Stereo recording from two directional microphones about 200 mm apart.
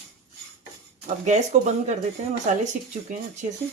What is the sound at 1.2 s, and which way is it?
Speech, 35° right (ahead or behind).